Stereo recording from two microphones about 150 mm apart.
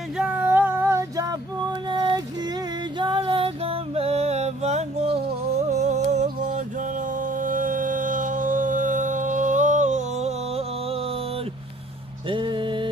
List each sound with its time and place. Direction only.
0.2 s female singing: 10° right (ahead or behind); by 2.2 s 30° right (ahead or behind)
3.0 s music: 35° right (ahead or behind); by 6.2 s 50° right (ahead or behind)
7.2 s a sound: 60° right (ahead or behind); by 11.0 s 45° right (ahead or behind)
12.3 s music: 35° right (ahead or behind)